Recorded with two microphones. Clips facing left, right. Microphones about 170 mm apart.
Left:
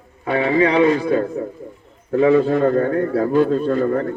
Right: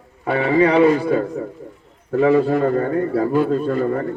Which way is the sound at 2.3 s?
10° right (ahead or behind).